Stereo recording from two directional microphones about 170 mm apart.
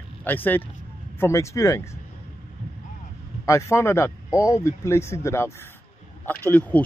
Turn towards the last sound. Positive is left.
turn(degrees=10)  # may be behind; listen again after turning